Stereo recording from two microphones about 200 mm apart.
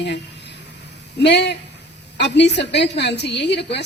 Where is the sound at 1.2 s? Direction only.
60° left (ahead or behind).